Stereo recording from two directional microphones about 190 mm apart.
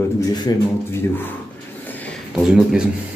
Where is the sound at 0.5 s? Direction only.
20° left (ahead or behind).